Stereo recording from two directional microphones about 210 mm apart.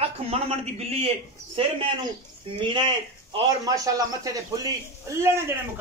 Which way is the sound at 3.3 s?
15° right (ahead or behind).